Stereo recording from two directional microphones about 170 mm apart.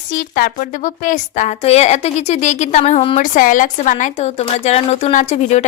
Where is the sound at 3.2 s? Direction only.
50° left (ahead or behind).